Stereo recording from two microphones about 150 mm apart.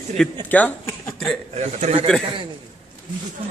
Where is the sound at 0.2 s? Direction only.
10° left (ahead or behind).